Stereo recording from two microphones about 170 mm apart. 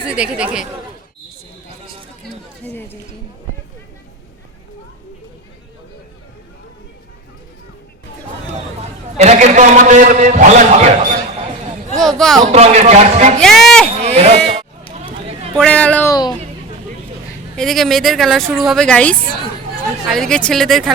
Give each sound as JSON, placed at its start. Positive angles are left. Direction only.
{"t": 0.1, "sound": "speech", "side_deg": -5}
{"t": 9.1, "sound": "a man's voice", "side_deg": -40}
{"t": 11.9, "sound": "speech", "side_deg": 0}
{"t": 12.5, "sound": "a man's voice", "side_deg": -40}
{"t": 13.4, "sound": "speech", "side_deg": 0}
{"t": 14.0, "sound": "baby cry", "side_deg": -40}
{"t": 15.5, "sound": "speech", "side_deg": 5}
{"t": 17.6, "sound": "speech", "side_deg": 0}